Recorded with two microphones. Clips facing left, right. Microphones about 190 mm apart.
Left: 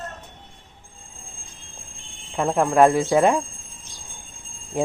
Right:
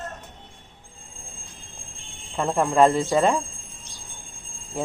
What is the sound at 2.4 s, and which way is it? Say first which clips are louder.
Speech: left 2 dB; 5° left (ahead or behind).